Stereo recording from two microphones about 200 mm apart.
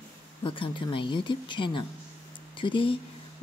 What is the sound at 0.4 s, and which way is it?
A woman's voice, 25° left (ahead or behind).